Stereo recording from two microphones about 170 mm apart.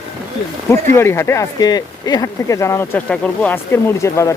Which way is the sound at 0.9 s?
15° left (ahead or behind).